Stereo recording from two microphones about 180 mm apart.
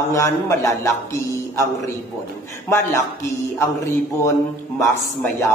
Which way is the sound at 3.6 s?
15° left (ahead or behind).